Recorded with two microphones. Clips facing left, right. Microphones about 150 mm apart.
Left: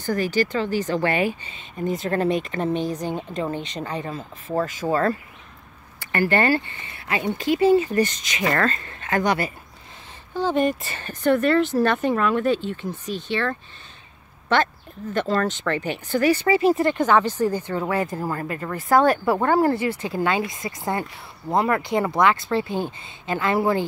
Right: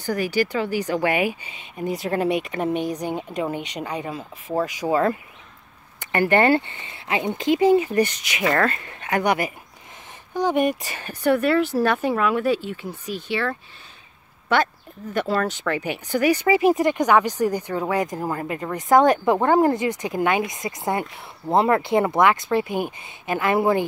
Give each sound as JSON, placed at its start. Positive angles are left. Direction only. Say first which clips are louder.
{"t": 0.0, "sound": "speech", "louder": "even", "side_deg": -10}